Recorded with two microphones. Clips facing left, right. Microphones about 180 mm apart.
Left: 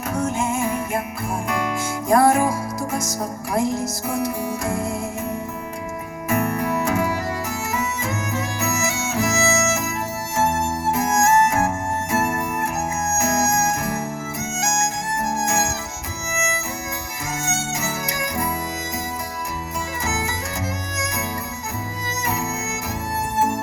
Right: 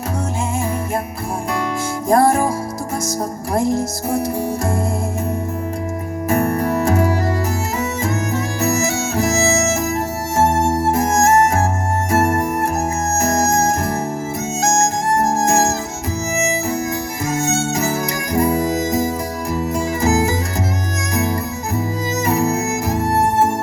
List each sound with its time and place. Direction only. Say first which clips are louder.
2.0 s music: right 2 dB; 35° right (ahead or behind)
3.5 s speech: right 4 dB; 35° right (ahead or behind)
6.2 s music: right 4 dB; 35° right (ahead or behind)
17.3 s music: right 7 dB; 35° right (ahead or behind)
22.9 s music: right 11 dB; 35° right (ahead or behind)